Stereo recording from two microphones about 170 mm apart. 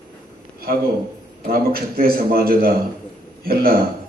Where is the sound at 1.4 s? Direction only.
60° right (ahead or behind).